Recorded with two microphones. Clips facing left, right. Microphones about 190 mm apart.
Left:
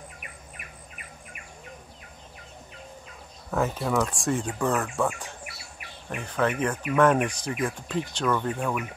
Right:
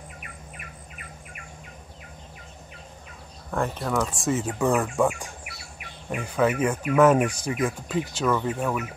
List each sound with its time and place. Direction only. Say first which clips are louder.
3.5 s speech: left 1 dB; 5° left (ahead or behind)